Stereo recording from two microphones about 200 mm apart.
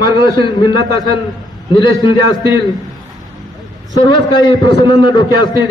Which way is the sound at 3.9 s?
20° left (ahead or behind).